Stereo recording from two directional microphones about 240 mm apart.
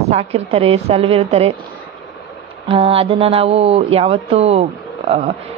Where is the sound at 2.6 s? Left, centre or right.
Right.